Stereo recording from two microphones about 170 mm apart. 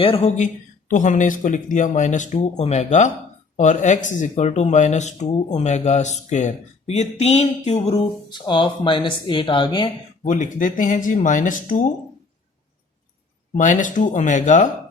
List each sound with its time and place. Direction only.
0.0 s speech: 35° left (ahead or behind)
8.3 s a woman's voice: 25° left (ahead or behind)
10.2 s speech: 50° left (ahead or behind)
13.6 s speech: 50° left (ahead or behind)